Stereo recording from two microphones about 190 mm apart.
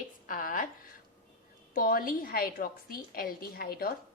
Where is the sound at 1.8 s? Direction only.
50° left (ahead or behind).